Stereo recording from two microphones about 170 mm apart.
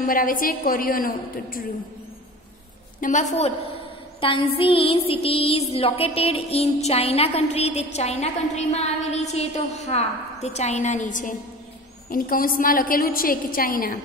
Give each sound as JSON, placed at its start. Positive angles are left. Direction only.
{"t": 0.0, "sound": "a woman's voice", "side_deg": 55}
{"t": 3.0, "sound": "a woman's voice", "side_deg": 45}